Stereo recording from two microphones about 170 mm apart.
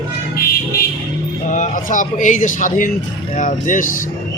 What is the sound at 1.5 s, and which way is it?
Speech, 45° left (ahead or behind).